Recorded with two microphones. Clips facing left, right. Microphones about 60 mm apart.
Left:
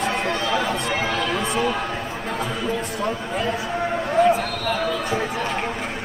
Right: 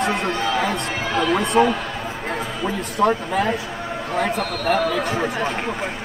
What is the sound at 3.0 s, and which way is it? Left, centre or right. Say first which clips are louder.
Speech: right 6 dB; right.